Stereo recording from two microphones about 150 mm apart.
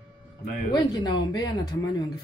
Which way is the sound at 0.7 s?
30° left (ahead or behind).